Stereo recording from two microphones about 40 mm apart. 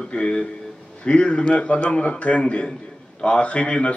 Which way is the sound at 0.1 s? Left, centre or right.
Left.